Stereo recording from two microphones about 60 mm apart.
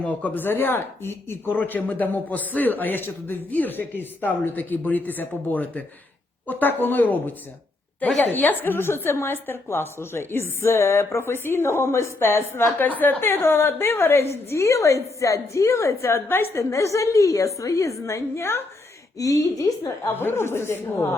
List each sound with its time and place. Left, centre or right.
0.1 s a woman's voice: left
19.1 s a woman's voice: left
20.1 s a woman's voice: left